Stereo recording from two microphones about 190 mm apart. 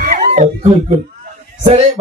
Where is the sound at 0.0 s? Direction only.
35° right (ahead or behind).